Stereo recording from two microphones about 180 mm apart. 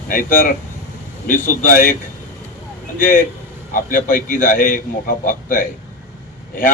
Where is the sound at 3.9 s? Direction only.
50° left (ahead or behind).